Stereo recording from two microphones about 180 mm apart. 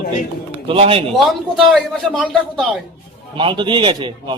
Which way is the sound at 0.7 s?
30° right (ahead or behind).